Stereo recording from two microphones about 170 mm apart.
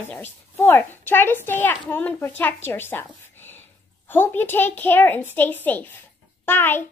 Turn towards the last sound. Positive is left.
turn(degrees=10)  # may be behind; listen again after turning